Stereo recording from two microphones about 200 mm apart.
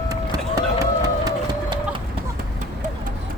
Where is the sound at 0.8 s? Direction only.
20° right (ahead or behind).